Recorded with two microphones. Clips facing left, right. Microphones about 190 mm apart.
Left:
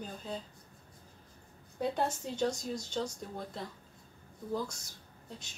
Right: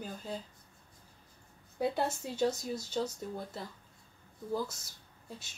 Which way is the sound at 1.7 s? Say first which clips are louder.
Right 1 dB; 5° right (ahead or behind).